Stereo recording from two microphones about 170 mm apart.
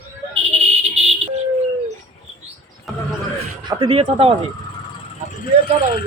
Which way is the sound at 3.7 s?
30° right (ahead or behind).